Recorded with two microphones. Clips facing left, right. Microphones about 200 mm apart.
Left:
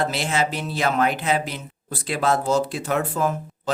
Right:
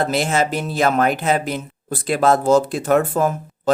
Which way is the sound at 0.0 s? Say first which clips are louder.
Right 4 dB; 45° right (ahead or behind).